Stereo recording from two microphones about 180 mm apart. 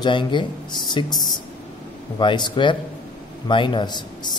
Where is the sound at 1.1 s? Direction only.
Centre (ahead or behind).